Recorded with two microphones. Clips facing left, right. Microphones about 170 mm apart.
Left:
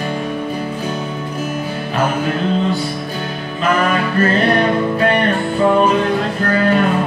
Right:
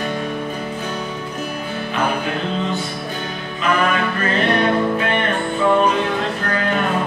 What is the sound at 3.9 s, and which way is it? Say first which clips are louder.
Music: left 5 dB; 40° left (ahead or behind).